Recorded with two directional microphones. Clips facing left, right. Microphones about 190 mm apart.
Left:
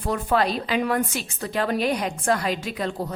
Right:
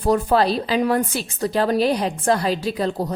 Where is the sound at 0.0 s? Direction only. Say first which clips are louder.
Right 5 dB; 35° right (ahead or behind).